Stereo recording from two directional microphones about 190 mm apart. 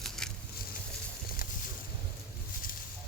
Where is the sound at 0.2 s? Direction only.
5° left (ahead or behind).